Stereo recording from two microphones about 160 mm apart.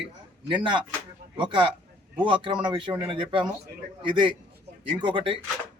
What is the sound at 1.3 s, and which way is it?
A man's voice, 30° right (ahead or behind).